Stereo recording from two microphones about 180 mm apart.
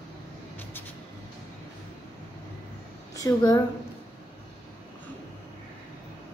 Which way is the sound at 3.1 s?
20° left (ahead or behind).